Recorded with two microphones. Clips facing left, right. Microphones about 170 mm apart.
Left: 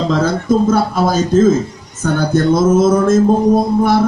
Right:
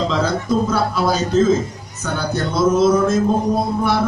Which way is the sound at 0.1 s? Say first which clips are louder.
Left 5 dB; 50° left (ahead or behind).